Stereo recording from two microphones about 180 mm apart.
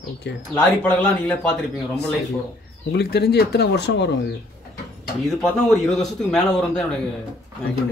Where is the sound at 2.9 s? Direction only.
65° left (ahead or behind).